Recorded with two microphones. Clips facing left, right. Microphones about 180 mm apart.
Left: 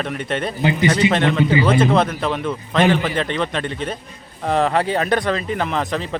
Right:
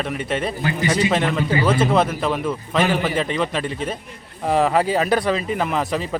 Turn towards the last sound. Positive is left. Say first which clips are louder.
# even
turn(degrees=-5)  # may be behind; listen again after turning